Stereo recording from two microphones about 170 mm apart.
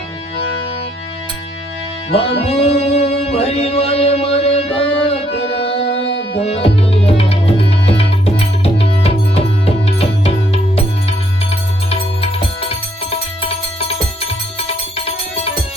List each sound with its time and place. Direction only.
2.0 s music: 35° left (ahead or behind)
5.8 s music: 90° left
6.3 s tabla: 35° left (ahead or behind)
9.8 s music: 35° left (ahead or behind)
11.9 s music: 35° left (ahead or behind)